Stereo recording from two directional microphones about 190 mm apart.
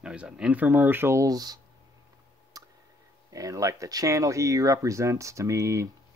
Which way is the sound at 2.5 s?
20° right (ahead or behind).